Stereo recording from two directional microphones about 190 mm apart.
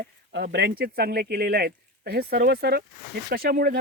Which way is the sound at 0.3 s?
65° right (ahead or behind).